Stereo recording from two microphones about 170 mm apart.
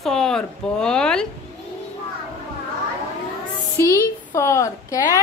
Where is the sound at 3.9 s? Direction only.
15° left (ahead or behind).